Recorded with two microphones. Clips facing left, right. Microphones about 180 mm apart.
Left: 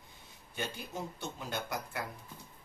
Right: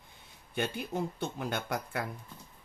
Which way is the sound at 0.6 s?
55° right (ahead or behind).